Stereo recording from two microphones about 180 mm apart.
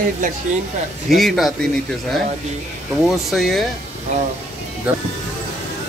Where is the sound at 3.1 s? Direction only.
Centre (ahead or behind).